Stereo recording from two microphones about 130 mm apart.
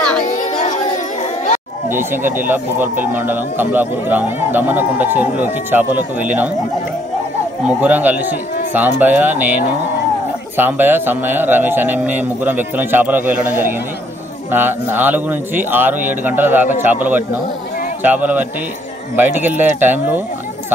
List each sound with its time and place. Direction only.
0.2 s music: 75° left (ahead or behind)
1.9 s speech: 15° right (ahead or behind)
7.6 s speech: 10° right (ahead or behind)